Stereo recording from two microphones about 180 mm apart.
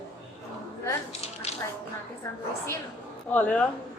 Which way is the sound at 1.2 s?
35° left (ahead or behind).